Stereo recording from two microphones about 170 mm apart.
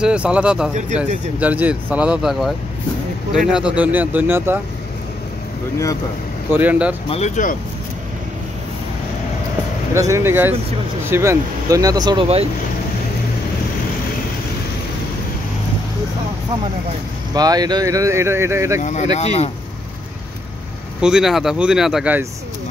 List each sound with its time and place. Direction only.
0.0 s speech: 5° right (ahead or behind)
6.5 s speech: 10° right (ahead or behind)
7.1 s speech: 40° left (ahead or behind)
9.9 s speech: 15° right (ahead or behind)
17.3 s speech: 20° right (ahead or behind)
18.8 s speech: 45° left (ahead or behind)
21.0 s speech: 5° right (ahead or behind)